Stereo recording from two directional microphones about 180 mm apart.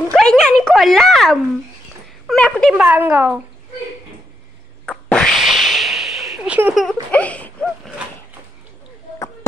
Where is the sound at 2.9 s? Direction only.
10° right (ahead or behind).